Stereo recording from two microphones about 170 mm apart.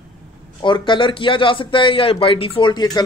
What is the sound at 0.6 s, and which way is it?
A man's voice, 30° left (ahead or behind).